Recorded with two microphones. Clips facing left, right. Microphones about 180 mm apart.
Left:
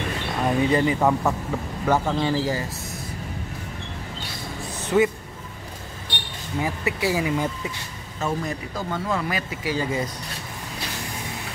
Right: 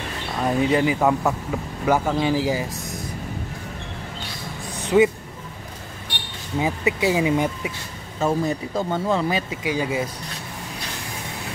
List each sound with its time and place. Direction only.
0.4 s speech: 5° right (ahead or behind)
4.8 s speech: 15° right (ahead or behind)
6.6 s speech: 20° right (ahead or behind)